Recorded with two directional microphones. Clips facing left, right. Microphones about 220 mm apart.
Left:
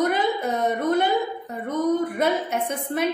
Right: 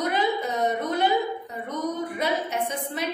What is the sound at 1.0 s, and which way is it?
A woman's voice, 50° left (ahead or behind).